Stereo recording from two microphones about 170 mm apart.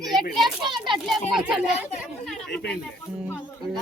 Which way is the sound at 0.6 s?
25° right (ahead or behind).